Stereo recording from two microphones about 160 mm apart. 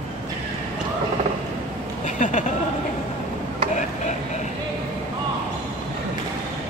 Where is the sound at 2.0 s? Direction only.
50° left (ahead or behind).